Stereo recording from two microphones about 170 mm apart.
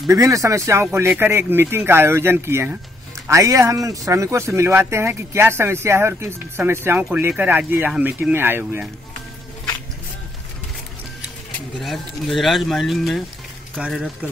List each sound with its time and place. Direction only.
0.1 s speech: 20° right (ahead or behind)
11.8 s speech: centre (ahead or behind)